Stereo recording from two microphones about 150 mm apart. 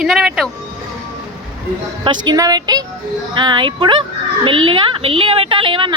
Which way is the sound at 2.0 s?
25° right (ahead or behind).